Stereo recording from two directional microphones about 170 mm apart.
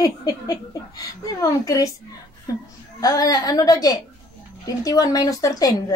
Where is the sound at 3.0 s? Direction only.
20° left (ahead or behind).